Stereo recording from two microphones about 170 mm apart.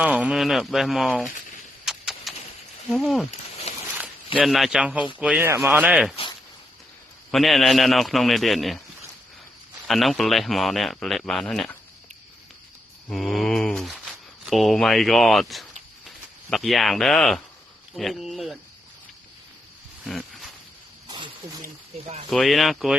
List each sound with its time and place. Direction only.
0.0 s speech: 5° right (ahead or behind)
1.8 s a sound: centre (ahead or behind)
2.9 s speech: centre (ahead or behind)
3.7 s a sound: 40° left (ahead or behind)
4.4 s speech: centre (ahead or behind)
7.3 s speech: centre (ahead or behind)
9.8 s speech: centre (ahead or behind)
13.1 s speech: centre (ahead or behind)
20.1 s a sound: centre (ahead or behind)
22.3 s speech: centre (ahead or behind)